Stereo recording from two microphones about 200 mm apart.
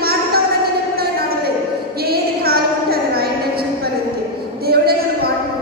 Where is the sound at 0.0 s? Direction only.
50° right (ahead or behind).